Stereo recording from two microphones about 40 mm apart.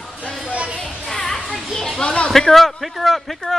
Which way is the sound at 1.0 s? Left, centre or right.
Centre.